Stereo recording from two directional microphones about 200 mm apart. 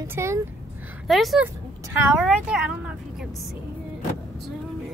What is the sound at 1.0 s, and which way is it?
Speech, centre (ahead or behind).